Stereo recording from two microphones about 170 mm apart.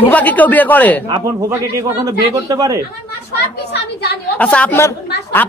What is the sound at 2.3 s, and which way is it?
Speech, 20° right (ahead or behind).